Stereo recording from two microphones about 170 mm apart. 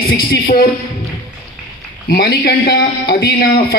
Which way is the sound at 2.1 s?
65° left (ahead or behind).